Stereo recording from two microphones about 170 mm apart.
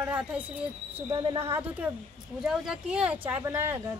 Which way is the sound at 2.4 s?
5° right (ahead or behind).